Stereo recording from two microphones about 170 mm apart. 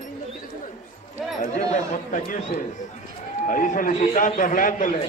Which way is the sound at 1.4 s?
45° left (ahead or behind).